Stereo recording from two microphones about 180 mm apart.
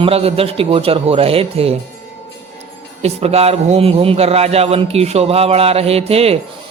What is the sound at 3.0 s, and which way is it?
Speech, 35° right (ahead or behind).